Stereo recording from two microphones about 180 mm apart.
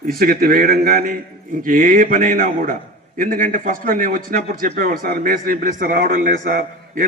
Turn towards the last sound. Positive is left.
turn(degrees=-50)  # may be behind; listen again after turning